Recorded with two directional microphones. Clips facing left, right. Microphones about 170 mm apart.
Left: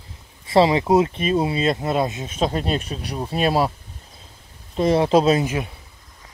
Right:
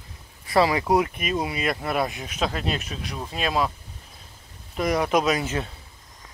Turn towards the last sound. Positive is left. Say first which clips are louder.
# left 3 dB
turn(degrees=10)  # may be behind; listen again after turning